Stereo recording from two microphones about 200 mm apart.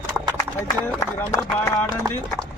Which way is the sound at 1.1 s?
15° left (ahead or behind).